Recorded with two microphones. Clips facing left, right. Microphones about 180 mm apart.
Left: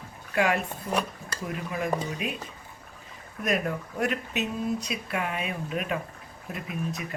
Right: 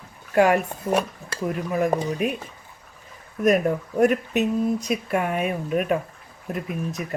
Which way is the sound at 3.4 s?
45° right (ahead or behind).